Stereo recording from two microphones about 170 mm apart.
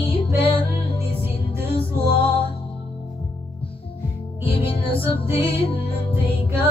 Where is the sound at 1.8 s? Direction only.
35° left (ahead or behind).